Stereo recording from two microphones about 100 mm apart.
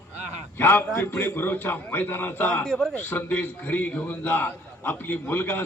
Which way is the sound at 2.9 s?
20° left (ahead or behind).